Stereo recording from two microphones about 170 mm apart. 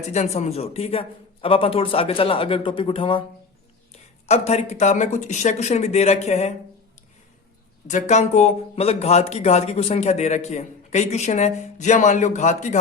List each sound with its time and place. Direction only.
0.1 s speech: 40° left (ahead or behind)
4.3 s speech: 40° left (ahead or behind)
7.9 s speech: 45° left (ahead or behind)